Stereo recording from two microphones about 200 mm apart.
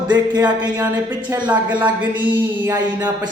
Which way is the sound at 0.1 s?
20° right (ahead or behind).